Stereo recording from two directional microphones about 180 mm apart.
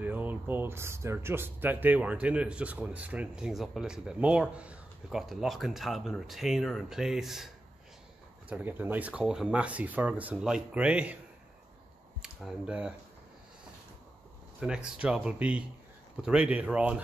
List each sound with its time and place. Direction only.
0.0 s speech: 10° right (ahead or behind)
8.5 s speech: 10° right (ahead or behind)
12.2 s speech: 5° right (ahead or behind)
14.6 s speech: 5° right (ahead or behind)